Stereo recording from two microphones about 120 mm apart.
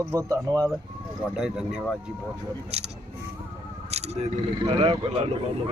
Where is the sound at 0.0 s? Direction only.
30° right (ahead or behind).